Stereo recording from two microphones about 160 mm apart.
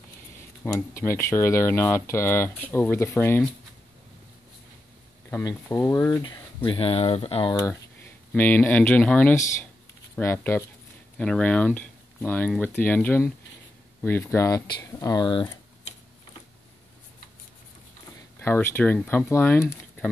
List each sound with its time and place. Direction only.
0.7 s speech: 20° left (ahead or behind)
5.4 s speech: 20° left (ahead or behind)
6.2 s speech: 30° left (ahead or behind)
8.3 s speech: 10° left (ahead or behind); by 15.5 s 25° left (ahead or behind)
18.4 s speech: 15° left (ahead or behind)